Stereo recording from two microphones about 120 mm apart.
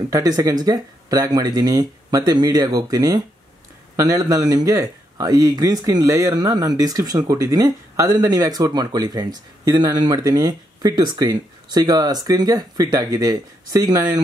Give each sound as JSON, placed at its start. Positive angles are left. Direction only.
{"t": 0.1, "sound": "speech", "side_deg": -30}